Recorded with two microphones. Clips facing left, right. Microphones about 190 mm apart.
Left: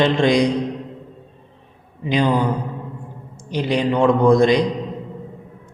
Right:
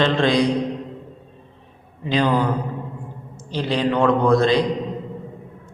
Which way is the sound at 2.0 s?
15° left (ahead or behind).